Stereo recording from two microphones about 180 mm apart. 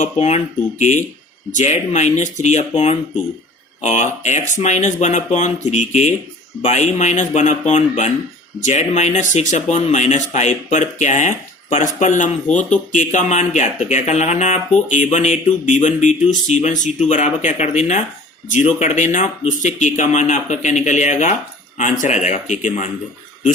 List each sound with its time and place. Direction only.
0.0 s speech: 40° left (ahead or behind)